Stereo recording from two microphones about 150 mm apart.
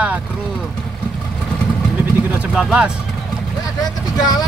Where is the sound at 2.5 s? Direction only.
5° right (ahead or behind).